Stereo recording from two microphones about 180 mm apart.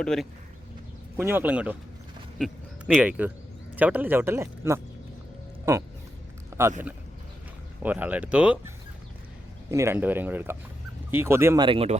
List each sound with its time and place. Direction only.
0.0 s speech: 5° left (ahead or behind)
1.1 s speech: 10° right (ahead or behind)
6.5 s speech: 15° right (ahead or behind)
11.6 s speech: 30° right (ahead or behind)